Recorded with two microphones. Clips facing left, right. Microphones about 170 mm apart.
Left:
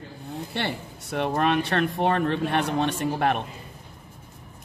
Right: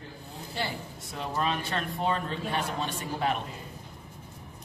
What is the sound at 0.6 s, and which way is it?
Speech, 70° left (ahead or behind).